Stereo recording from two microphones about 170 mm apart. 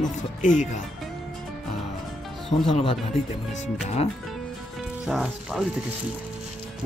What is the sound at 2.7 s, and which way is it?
Speech, 35° left (ahead or behind).